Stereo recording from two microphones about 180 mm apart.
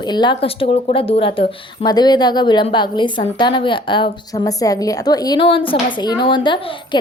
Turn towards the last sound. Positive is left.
turn(degrees=25)  # may be behind; listen again after turning